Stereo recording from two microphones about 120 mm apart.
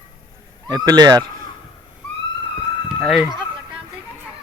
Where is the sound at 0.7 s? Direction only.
35° right (ahead or behind).